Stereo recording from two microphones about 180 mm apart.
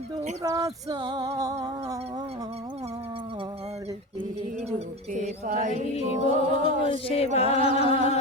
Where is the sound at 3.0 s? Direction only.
30° right (ahead or behind).